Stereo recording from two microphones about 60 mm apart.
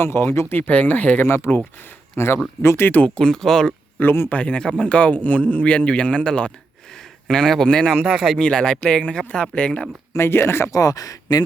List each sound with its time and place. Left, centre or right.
0.0 s speech: left
0.7 s a man's voice: left
1.2 s speech: left
3.2 s speech: centre
4.0 s speech: left
4.3 s a man's voice: left
7.9 s speech: centre
8.4 s speech: centre
10.1 s speech: left
10.7 s speech: left